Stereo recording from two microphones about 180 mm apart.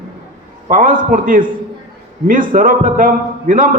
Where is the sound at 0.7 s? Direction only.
50° right (ahead or behind).